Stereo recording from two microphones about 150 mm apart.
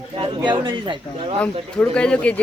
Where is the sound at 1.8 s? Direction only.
5° left (ahead or behind).